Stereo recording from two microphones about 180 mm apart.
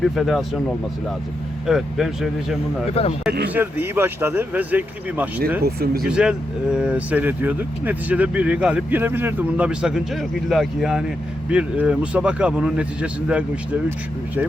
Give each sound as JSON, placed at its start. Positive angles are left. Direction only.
{"t": 0.0, "sound": "a man's voice", "side_deg": 0}
{"t": 1.6, "sound": "a man's voice", "side_deg": 0}
{"t": 3.0, "sound": "speech", "side_deg": 35}
{"t": 3.5, "sound": "speech", "side_deg": -10}
{"t": 5.6, "sound": "speech", "side_deg": -60}
{"t": 6.1, "sound": "a man's voice", "side_deg": -5}